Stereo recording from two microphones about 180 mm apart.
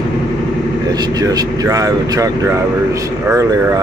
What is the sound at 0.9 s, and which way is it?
Speech, 20° right (ahead or behind).